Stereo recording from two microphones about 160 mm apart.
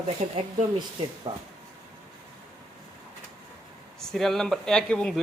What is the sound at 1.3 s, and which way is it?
Speech, 35° right (ahead or behind).